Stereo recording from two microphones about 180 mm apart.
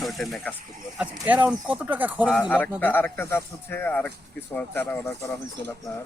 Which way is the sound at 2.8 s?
10° left (ahead or behind).